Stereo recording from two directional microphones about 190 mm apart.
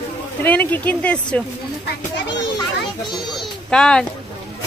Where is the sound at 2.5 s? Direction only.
25° left (ahead or behind).